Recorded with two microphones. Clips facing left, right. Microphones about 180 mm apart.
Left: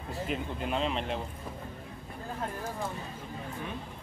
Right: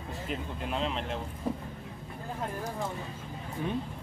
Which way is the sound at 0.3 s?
Centre (ahead or behind).